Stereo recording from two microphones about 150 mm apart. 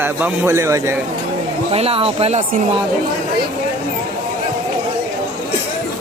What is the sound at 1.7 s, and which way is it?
Speech, 40° right (ahead or behind).